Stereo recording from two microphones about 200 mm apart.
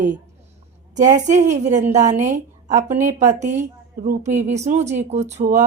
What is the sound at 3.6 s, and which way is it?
Speech, 35° right (ahead or behind).